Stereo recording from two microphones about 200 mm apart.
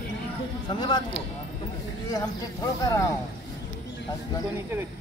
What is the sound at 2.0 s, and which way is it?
Speech, 15° left (ahead or behind).